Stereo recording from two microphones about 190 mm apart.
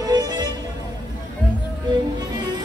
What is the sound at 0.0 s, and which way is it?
Music, 20° right (ahead or behind).